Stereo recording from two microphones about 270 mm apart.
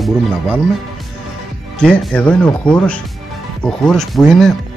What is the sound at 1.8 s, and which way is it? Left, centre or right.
Speech, centre.